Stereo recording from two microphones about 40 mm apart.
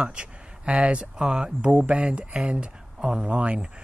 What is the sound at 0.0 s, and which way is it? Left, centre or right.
Speech, right.